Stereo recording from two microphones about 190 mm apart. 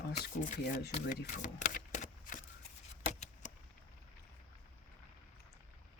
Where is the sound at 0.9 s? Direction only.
45° left (ahead or behind).